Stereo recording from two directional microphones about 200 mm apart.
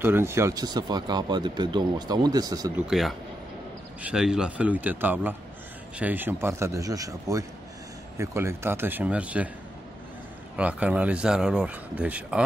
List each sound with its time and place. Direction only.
0.0 s speech: 10° right (ahead or behind)
2.9 s speech: centre (ahead or behind)
10.5 s speech: 5° right (ahead or behind)